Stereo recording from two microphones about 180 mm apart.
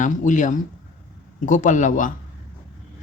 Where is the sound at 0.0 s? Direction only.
45° left (ahead or behind).